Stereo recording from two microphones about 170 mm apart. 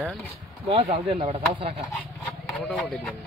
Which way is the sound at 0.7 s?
35° right (ahead or behind).